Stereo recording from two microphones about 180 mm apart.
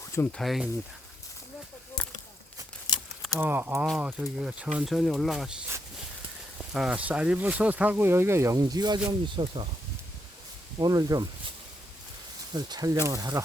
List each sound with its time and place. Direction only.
0.1 s speech: 10° left (ahead or behind)
3.3 s speech: 10° right (ahead or behind)
6.7 s speech: 5° right (ahead or behind); by 9.6 s 25° right (ahead or behind)
10.8 s speech: 20° right (ahead or behind)
12.5 s speech: 20° right (ahead or behind)